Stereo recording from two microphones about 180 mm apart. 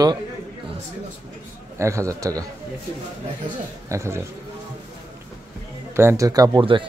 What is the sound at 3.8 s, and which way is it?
Speech, 15° right (ahead or behind).